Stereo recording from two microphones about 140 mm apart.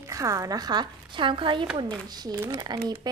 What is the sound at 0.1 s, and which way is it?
Speech, 25° right (ahead or behind).